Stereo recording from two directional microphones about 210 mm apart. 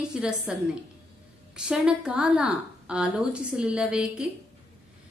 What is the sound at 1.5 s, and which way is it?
A woman's voice, 5° right (ahead or behind).